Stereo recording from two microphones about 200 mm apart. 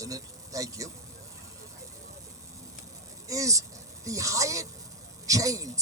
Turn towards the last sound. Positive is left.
turn(degrees=-15)  # may be behind; listen again after turning